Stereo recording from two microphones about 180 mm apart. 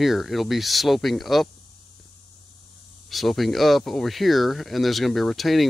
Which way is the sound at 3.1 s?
Centre (ahead or behind).